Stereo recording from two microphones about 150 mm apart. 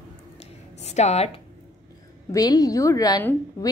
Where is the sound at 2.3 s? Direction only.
25° left (ahead or behind).